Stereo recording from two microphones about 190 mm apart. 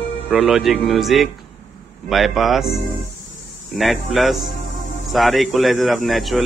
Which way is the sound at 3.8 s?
Centre (ahead or behind).